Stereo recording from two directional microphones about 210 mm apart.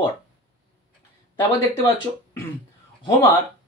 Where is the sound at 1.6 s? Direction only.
10° left (ahead or behind).